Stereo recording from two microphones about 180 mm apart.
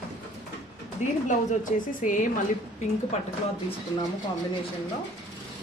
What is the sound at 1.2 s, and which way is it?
A woman's voice, 45° left (ahead or behind).